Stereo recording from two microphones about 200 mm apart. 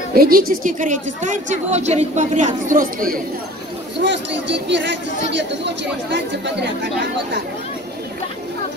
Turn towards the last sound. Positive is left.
turn(degrees=-60)  # may be behind; listen again after turning